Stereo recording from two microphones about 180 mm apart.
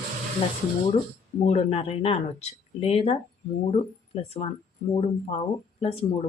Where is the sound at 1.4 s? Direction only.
35° left (ahead or behind).